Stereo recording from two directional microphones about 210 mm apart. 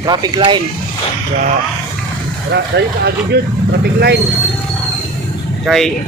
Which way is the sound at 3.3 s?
50° right (ahead or behind).